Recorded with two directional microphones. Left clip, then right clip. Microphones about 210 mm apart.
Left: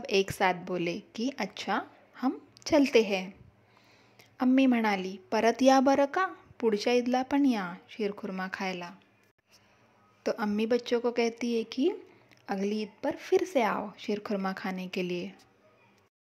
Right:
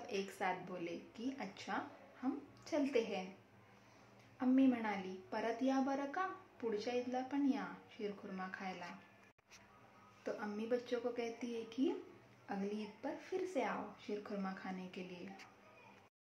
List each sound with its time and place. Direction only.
0.0 s a woman's voice: 45° left (ahead or behind)
4.4 s a woman's voice: 50° left (ahead or behind)
10.2 s speech: 50° left (ahead or behind)